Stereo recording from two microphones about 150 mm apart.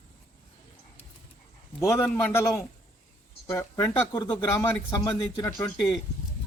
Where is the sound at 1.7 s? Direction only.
20° left (ahead or behind).